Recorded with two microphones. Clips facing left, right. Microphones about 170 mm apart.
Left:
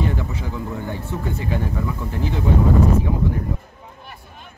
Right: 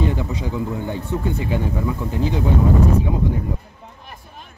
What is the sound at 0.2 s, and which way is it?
Speech, 15° right (ahead or behind).